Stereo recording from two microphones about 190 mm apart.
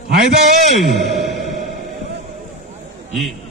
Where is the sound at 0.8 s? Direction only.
Centre (ahead or behind).